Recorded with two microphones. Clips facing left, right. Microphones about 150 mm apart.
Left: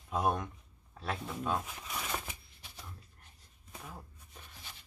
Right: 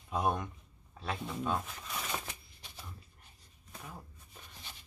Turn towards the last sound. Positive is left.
turn(degrees=5)  # may be behind; listen again after turning